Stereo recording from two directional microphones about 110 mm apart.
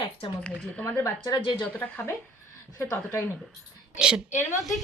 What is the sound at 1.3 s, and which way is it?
Speech, 45° left (ahead or behind).